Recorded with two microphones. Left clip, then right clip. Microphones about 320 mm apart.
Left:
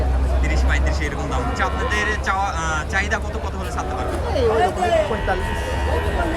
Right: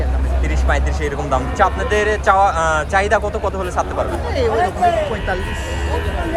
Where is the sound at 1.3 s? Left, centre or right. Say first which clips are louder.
Right 8 dB; centre.